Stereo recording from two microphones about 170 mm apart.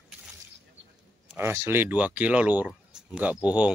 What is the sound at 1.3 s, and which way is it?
Speech, 15° right (ahead or behind).